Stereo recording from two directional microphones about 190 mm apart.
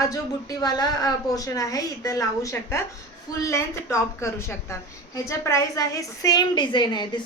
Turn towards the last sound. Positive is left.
turn(degrees=25)  # may be behind; listen again after turning